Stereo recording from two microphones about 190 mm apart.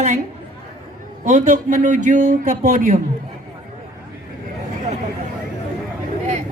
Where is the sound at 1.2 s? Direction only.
40° right (ahead or behind).